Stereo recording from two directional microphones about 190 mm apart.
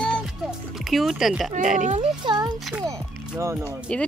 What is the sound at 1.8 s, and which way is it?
Speech, 35° right (ahead or behind).